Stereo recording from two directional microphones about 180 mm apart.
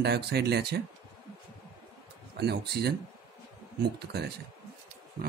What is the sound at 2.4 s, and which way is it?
Speech, 65° right (ahead or behind).